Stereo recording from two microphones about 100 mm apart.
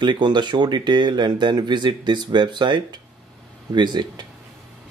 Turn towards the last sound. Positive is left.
turn(degrees=-45)  # may be behind; listen again after turning